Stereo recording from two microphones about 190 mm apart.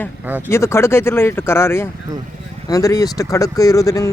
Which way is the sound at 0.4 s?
15° left (ahead or behind).